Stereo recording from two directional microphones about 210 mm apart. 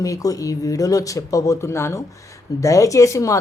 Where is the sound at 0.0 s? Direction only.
15° left (ahead or behind).